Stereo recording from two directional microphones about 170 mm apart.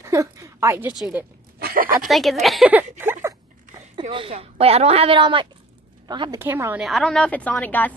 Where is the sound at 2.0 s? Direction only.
Centre (ahead or behind).